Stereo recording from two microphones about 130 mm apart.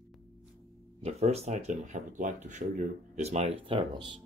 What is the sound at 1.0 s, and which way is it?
Speech, 55° right (ahead or behind).